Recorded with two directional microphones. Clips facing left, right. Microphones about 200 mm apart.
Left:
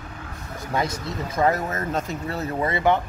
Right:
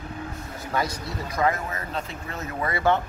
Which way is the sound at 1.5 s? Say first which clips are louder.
Left 4 dB; 40° left (ahead or behind).